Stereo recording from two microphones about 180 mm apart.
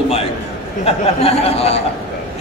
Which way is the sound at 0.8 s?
35° left (ahead or behind).